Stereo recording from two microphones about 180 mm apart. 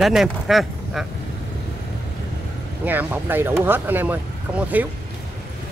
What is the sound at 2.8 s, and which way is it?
Speech, 10° right (ahead or behind).